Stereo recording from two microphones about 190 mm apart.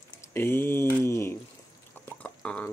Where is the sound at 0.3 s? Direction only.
10° left (ahead or behind).